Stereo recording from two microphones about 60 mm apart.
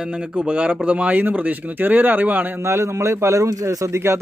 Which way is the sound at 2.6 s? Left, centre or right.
Right.